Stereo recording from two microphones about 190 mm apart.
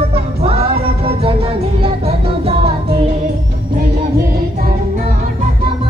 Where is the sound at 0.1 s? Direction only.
30° right (ahead or behind).